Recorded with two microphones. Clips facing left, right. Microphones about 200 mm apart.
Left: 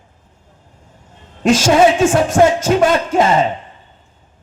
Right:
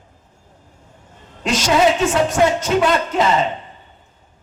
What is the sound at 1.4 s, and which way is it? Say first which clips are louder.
Speech: left 5 dB; 50° left (ahead or behind).